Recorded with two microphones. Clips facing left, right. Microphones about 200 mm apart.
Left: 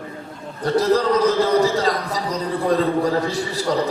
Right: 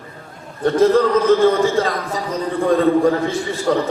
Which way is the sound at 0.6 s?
35° left (ahead or behind).